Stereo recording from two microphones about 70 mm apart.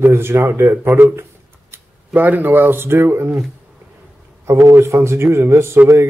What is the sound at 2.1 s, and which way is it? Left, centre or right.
Speech, right.